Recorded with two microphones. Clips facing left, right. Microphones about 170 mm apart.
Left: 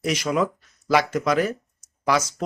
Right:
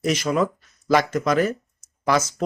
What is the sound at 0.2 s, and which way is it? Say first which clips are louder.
Speech: right 1 dB; 10° left (ahead or behind).